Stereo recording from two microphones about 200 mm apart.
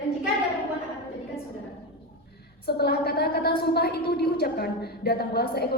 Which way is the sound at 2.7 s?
55° left (ahead or behind).